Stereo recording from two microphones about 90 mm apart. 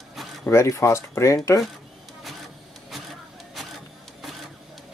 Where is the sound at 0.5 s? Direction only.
30° left (ahead or behind).